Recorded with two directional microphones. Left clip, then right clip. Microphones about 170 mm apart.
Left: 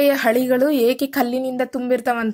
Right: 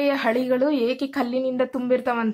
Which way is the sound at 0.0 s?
30° left (ahead or behind).